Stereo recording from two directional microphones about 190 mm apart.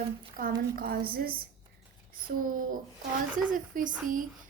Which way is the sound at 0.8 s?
50° right (ahead or behind).